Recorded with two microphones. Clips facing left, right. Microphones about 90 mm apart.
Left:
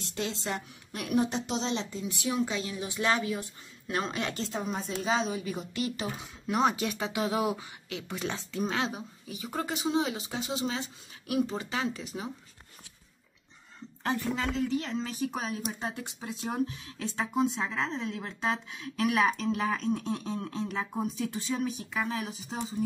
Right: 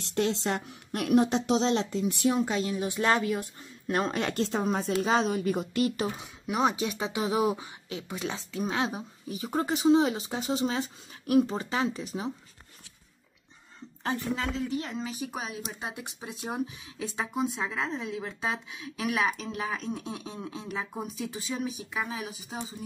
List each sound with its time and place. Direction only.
0.0 s speech: 65° right (ahead or behind)
2.0 s speech: 40° right (ahead or behind)
6.4 s speech: 5° right (ahead or behind)
6.7 s speech: 15° right (ahead or behind)
8.2 s speech: centre (ahead or behind)
8.6 s speech: 20° right (ahead or behind)
9.3 s speech: 35° right (ahead or behind)
14.8 s speech: 10° right (ahead or behind)